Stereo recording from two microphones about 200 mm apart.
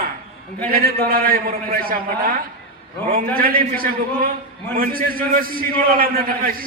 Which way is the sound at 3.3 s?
45° right (ahead or behind).